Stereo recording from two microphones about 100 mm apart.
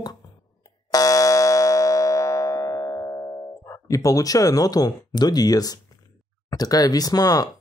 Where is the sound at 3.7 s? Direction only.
35° left (ahead or behind).